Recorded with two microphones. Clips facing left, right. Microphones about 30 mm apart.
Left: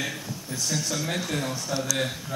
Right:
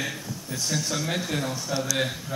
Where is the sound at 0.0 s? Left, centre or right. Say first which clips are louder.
Even; centre.